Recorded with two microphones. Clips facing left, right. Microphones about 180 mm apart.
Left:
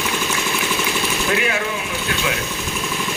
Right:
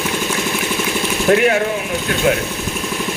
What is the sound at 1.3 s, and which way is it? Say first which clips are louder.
Speech: right 10 dB; 50° right (ahead or behind).